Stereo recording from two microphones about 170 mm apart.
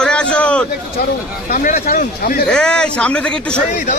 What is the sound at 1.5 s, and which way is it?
Speech, 55° left (ahead or behind).